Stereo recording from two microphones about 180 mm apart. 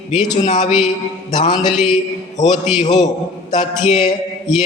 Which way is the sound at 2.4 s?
45° left (ahead or behind).